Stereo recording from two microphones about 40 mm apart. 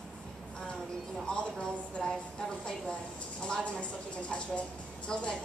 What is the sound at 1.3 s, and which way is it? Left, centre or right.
Speech, centre.